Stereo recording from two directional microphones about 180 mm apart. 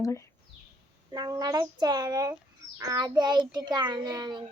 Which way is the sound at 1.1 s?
20° right (ahead or behind).